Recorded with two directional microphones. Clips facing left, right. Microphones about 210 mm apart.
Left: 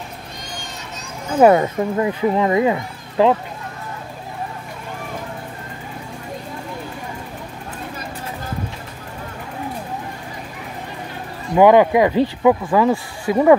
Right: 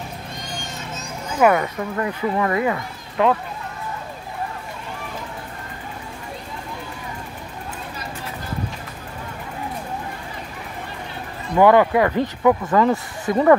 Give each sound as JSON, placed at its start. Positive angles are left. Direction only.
{"t": 1.4, "sound": "speech", "side_deg": 25}
{"t": 11.5, "sound": "speech", "side_deg": 15}